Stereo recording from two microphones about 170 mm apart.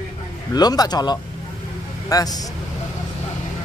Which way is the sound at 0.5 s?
25° left (ahead or behind).